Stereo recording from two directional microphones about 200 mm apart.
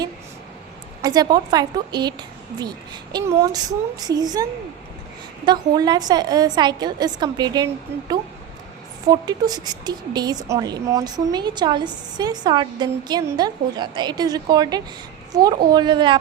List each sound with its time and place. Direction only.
1.0 s a woman's voice: 20° right (ahead or behind)
5.5 s a woman's voice: 20° right (ahead or behind)